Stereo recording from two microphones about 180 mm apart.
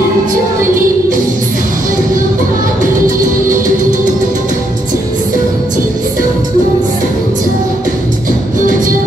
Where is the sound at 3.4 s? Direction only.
45° right (ahead or behind).